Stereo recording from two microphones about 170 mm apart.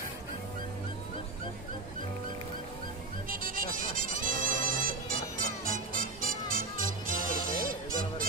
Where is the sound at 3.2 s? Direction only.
55° right (ahead or behind).